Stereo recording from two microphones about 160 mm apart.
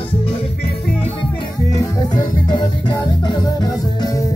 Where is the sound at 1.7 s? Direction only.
25° left (ahead or behind).